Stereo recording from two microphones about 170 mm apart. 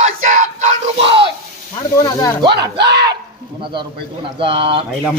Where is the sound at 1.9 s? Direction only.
20° left (ahead or behind).